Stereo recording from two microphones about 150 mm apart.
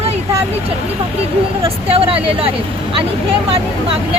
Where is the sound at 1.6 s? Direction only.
40° right (ahead or behind).